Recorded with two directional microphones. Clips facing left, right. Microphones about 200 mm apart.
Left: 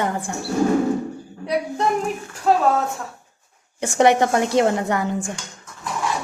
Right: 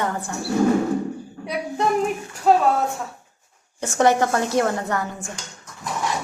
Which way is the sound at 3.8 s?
15° left (ahead or behind).